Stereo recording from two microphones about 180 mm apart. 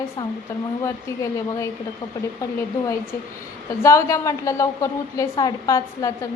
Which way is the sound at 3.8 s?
15° left (ahead or behind).